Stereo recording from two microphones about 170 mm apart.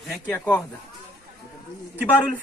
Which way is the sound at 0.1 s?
10° left (ahead or behind).